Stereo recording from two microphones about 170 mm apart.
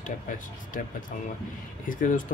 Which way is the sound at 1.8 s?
50° left (ahead or behind).